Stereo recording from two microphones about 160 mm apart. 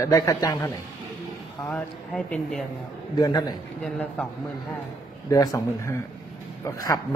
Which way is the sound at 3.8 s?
10° left (ahead or behind).